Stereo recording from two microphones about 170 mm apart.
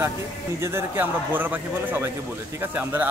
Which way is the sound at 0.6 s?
15° right (ahead or behind).